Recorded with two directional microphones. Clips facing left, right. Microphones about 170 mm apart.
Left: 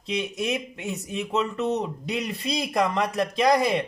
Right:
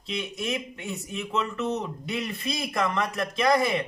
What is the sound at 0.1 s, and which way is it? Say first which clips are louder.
A man's voice: left 4 dB; 20° left (ahead or behind).